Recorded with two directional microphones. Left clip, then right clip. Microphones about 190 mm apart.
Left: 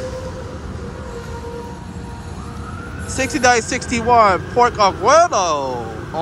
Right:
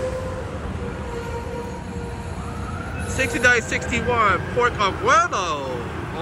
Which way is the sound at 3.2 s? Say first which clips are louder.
Left 3 dB; 20° left (ahead or behind).